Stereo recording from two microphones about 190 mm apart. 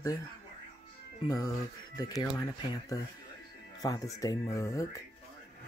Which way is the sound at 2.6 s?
20° left (ahead or behind).